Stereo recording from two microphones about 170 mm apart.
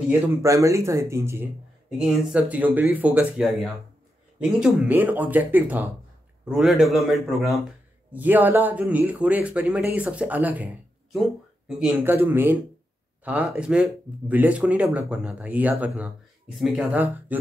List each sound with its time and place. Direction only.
0.4 s speech: 20° right (ahead or behind)
1.9 s a man's voice: 5° right (ahead or behind)